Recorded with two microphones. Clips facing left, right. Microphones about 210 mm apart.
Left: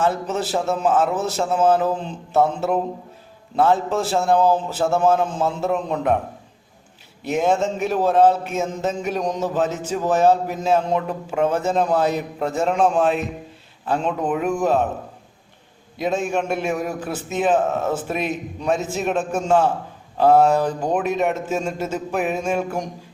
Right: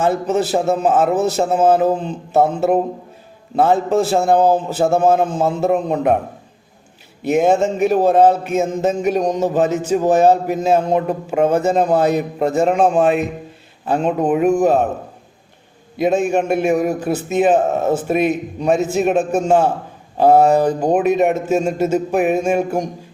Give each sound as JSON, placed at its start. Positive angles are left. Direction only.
{"t": 0.0, "sound": "a man's voice", "side_deg": -45}
{"t": 7.3, "sound": "a man's voice", "side_deg": -50}
{"t": 16.0, "sound": "a man's voice", "side_deg": -50}